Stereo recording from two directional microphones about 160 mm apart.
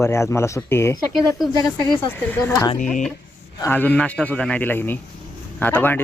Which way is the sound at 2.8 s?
50° left (ahead or behind).